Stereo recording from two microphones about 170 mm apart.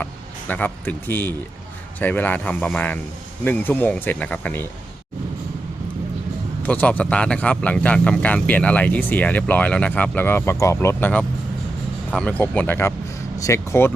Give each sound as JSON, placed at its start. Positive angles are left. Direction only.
{"t": 0.0, "sound": "speech", "side_deg": 10}
{"t": 6.6, "sound": "speech", "side_deg": 10}